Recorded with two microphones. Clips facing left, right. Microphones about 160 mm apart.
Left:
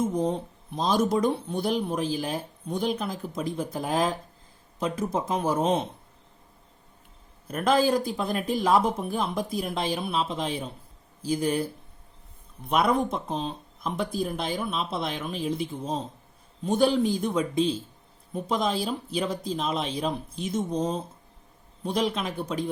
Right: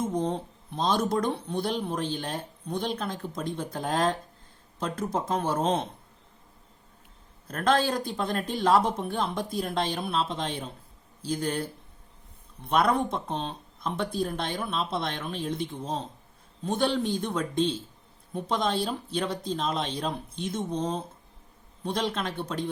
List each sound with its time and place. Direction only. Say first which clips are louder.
0.8 s speech: left 2 dB; 5° left (ahead or behind)
7.4 s speech: left 2 dB; 10° left (ahead or behind)